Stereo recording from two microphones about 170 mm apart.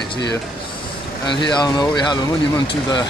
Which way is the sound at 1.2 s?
25° left (ahead or behind).